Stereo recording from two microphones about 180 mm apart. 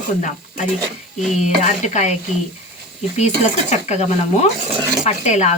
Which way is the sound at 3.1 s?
40° left (ahead or behind).